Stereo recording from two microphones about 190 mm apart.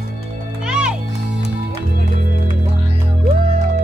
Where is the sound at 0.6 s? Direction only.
5° right (ahead or behind).